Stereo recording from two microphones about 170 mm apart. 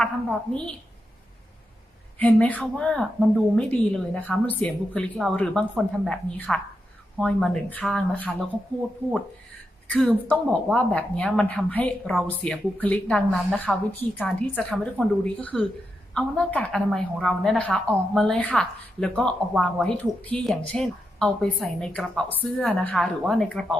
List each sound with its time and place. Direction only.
0.0 s a woman's voice: 5° left (ahead or behind)
2.1 s a woman's voice: 10° left (ahead or behind)
9.9 s a woman's voice: 10° left (ahead or behind)